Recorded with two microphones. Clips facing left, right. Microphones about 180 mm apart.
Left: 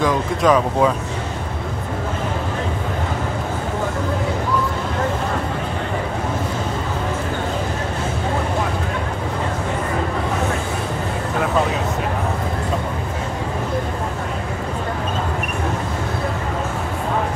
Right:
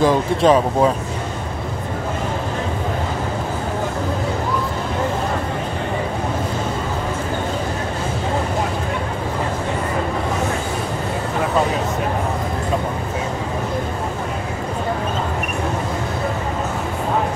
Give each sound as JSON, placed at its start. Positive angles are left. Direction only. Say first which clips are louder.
{"t": 0.0, "sound": "speech", "louder": "right 3 dB", "side_deg": -30}